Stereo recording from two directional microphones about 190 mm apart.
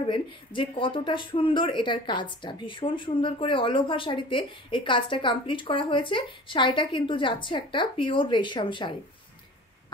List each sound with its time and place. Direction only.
0.0 s speech: 25° left (ahead or behind)